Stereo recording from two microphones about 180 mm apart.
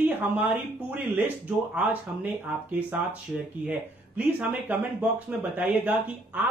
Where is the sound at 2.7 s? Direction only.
10° right (ahead or behind).